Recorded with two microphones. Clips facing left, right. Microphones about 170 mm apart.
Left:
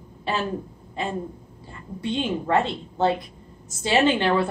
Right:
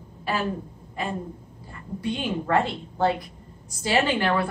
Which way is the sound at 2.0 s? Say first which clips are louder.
Left 2 dB; 25° left (ahead or behind).